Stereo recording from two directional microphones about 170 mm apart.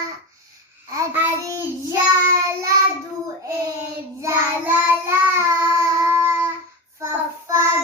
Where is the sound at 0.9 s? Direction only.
10° right (ahead or behind).